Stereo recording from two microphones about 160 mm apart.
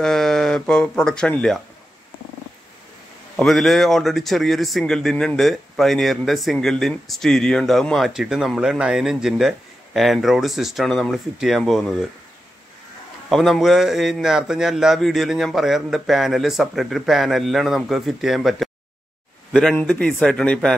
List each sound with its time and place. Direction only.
0.0 s speech: 5° left (ahead or behind)
3.3 s speech: centre (ahead or behind)
13.3 s speech: centre (ahead or behind)